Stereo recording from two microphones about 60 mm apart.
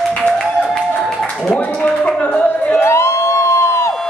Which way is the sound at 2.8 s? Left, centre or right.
Left.